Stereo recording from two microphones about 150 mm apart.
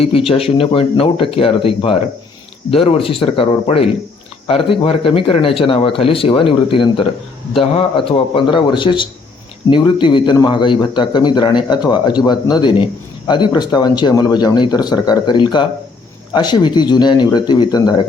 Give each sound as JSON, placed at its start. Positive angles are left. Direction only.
{"t": 0.3, "sound": "a man's voice", "side_deg": 40}